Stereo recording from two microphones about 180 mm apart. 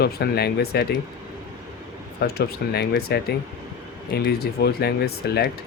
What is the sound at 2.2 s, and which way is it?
Speech, 60° left (ahead or behind).